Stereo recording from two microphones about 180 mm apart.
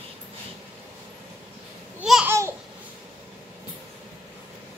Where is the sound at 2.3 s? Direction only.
15° right (ahead or behind).